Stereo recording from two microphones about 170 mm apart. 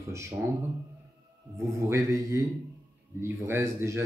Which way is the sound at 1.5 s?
20° right (ahead or behind).